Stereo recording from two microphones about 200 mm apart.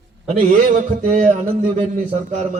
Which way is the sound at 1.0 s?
35° right (ahead or behind).